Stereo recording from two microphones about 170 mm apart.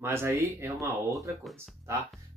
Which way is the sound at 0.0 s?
15° right (ahead or behind).